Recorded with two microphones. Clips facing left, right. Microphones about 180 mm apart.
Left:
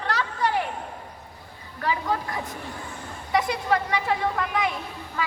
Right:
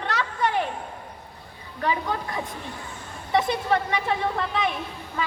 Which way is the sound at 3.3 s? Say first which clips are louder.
Right 1 dB; 25° right (ahead or behind).